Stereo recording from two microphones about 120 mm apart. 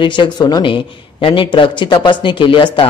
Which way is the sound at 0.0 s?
40° left (ahead or behind).